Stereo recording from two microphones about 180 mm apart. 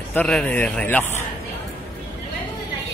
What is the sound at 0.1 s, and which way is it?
Speech, 5° left (ahead or behind).